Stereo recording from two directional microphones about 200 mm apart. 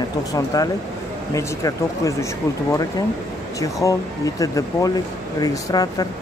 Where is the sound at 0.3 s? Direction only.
15° left (ahead or behind).